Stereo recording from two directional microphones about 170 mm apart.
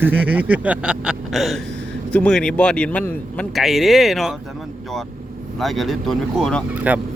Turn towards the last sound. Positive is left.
turn(degrees=-10)  # may be behind; listen again after turning